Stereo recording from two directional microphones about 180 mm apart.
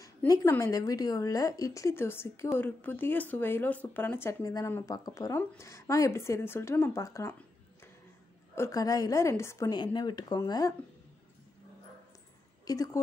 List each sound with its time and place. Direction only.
0.4 s a woman's voice: 15° left (ahead or behind)
8.5 s a woman's voice: 20° left (ahead or behind)
12.6 s a woman's voice: 20° left (ahead or behind)